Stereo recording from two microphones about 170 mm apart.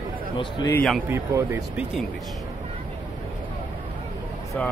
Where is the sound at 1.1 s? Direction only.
15° right (ahead or behind).